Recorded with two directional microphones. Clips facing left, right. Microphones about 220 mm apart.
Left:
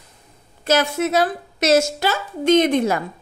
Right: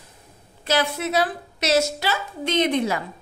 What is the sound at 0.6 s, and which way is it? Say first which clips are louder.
Speech: left 4 dB; 45° left (ahead or behind).